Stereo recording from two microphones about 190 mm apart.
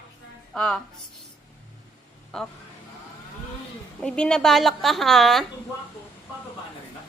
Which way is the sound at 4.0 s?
5° left (ahead or behind).